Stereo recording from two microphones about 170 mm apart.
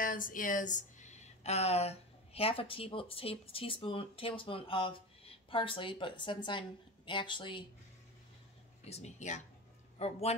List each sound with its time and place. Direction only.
0.0 s speech: 55° left (ahead or behind); by 7.6 s 30° left (ahead or behind)
8.8 s speech: 40° left (ahead or behind)